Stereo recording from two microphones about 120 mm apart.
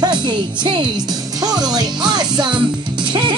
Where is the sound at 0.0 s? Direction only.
40° right (ahead or behind).